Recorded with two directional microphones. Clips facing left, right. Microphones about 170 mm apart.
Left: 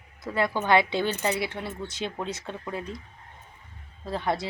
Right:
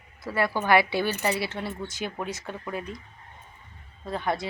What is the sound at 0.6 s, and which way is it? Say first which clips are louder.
Speech: right 1 dB; 20° left (ahead or behind).